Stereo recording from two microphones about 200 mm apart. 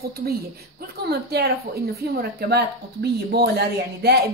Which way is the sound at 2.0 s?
50° right (ahead or behind).